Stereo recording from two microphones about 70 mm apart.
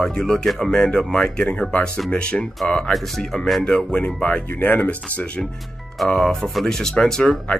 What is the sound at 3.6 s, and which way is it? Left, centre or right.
Speech, centre.